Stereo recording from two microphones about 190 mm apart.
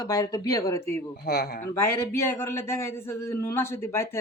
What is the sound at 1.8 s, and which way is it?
A man's voice, 15° left (ahead or behind).